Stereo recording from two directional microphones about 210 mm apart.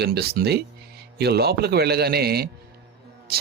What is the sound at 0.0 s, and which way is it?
Speech, 50° right (ahead or behind).